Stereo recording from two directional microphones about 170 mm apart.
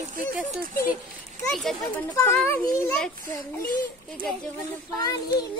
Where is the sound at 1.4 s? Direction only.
Centre (ahead or behind).